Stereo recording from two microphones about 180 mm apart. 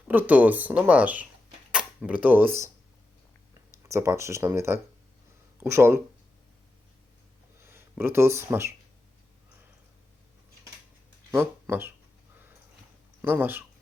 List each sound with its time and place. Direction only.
0.1 s speech: 10° right (ahead or behind)
3.7 s speech: 15° right (ahead or behind)
7.6 s speech: 15° right (ahead or behind)
11.3 s speech: 15° right (ahead or behind)
13.2 s speech: 10° right (ahead or behind)